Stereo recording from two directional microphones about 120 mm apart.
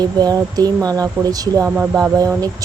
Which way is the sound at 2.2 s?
30° right (ahead or behind).